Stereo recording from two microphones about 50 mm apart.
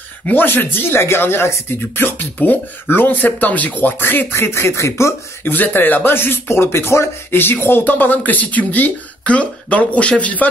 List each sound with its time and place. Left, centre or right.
0.3 s speech: left
1.7 s speech: left
4.3 s speech: left
5.4 s speech: left
7.8 s speech: left